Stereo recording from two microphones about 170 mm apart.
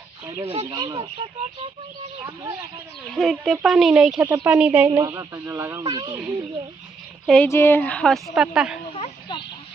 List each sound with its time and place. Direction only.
0.4 s speech: 30° right (ahead or behind)
3.2 s a woman's voice: centre (ahead or behind)
4.9 s speech: 20° right (ahead or behind)
7.3 s a woman's voice: 10° left (ahead or behind); by 8.8 s 5° right (ahead or behind)
8.9 s speech: 35° left (ahead or behind)